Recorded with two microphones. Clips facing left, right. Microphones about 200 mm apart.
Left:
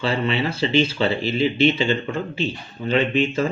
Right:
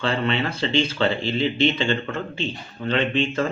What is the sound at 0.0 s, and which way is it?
Speech, 10° left (ahead or behind).